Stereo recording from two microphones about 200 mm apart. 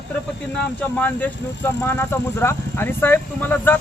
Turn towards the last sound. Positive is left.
turn(degrees=10)  # may be behind; listen again after turning